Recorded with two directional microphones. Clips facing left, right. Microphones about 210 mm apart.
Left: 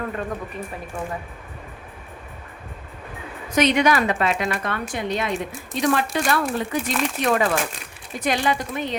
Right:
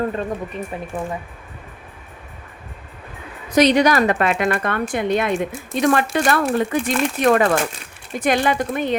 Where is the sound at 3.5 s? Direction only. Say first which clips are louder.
Right 4 dB; 35° right (ahead or behind).